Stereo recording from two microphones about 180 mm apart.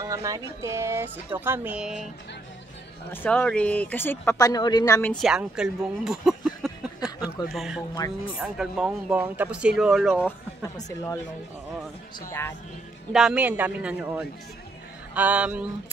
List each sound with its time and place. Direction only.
0.0 s speech: 20° right (ahead or behind)
3.1 s speech: 10° left (ahead or behind)
5.1 s speech: 5° right (ahead or behind)
10.2 s speech: 15° left (ahead or behind)
12.3 s speech: 15° left (ahead or behind)
13.1 s speech: 5° right (ahead or behind)